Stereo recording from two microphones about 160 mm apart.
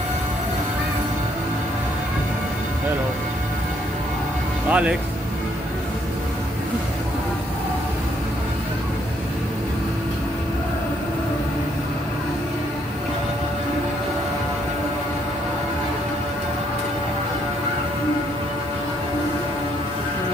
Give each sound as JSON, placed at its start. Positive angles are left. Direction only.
{"t": 4.6, "sound": "speech", "side_deg": -10}